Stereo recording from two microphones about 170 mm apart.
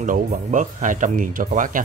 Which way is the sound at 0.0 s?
50° right (ahead or behind).